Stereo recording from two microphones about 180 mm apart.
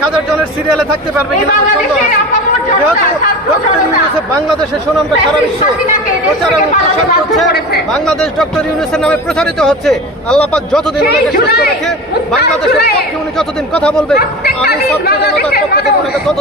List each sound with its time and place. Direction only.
8.0 s speech: 5° left (ahead or behind)
11.0 s speech: 60° left (ahead or behind)
13.7 s speech: 5° left (ahead or behind)
15.0 s speech: 60° left (ahead or behind)